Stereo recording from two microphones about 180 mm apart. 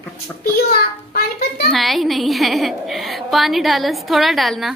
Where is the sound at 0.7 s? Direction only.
55° left (ahead or behind).